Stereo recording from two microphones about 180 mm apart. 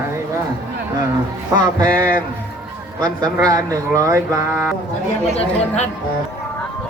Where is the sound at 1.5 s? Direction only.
20° right (ahead or behind).